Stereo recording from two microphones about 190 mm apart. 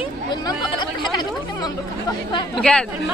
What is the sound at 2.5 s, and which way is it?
Speech, 5° left (ahead or behind).